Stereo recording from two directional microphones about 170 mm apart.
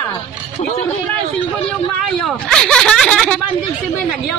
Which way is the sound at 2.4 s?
5° left (ahead or behind).